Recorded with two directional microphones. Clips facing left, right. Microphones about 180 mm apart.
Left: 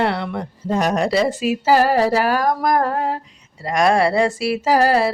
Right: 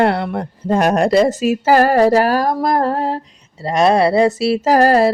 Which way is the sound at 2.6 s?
30° right (ahead or behind).